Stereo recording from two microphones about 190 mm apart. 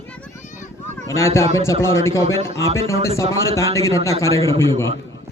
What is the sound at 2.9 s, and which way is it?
Speech, 30° right (ahead or behind).